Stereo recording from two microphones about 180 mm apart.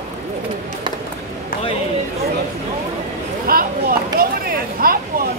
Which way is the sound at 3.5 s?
55° right (ahead or behind).